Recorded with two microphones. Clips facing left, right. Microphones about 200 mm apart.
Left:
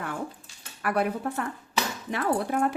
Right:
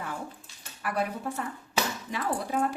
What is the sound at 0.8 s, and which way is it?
Speech, 60° left (ahead or behind).